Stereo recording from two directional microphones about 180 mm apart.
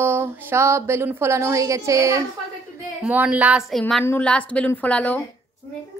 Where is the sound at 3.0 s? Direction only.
5° right (ahead or behind).